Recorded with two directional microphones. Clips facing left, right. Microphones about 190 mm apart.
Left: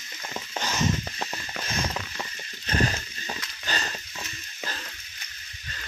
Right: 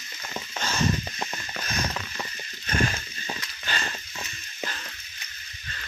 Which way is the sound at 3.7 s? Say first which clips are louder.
Left 1 dB; 40° left (ahead or behind).